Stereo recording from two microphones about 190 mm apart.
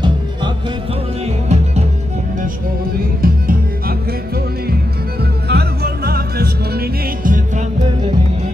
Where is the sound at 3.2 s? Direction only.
50° right (ahead or behind).